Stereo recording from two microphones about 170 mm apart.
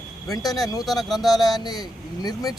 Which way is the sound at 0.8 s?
Centre (ahead or behind).